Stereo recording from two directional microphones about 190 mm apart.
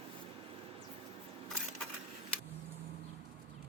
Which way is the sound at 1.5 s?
5° left (ahead or behind).